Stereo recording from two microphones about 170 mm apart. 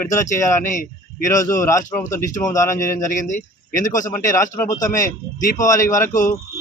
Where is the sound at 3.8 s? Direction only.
50° left (ahead or behind).